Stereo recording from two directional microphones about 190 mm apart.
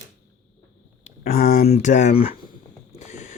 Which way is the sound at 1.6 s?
35° left (ahead or behind).